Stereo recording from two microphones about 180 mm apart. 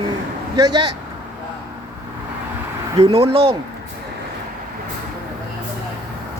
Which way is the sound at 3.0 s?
35° right (ahead or behind).